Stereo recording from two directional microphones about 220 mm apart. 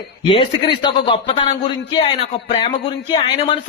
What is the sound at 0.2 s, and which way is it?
A man's voice, 25° left (ahead or behind).